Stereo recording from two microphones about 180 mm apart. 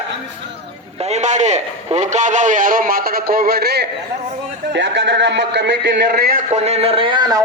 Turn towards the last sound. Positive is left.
turn(degrees=-20)  # may be behind; listen again after turning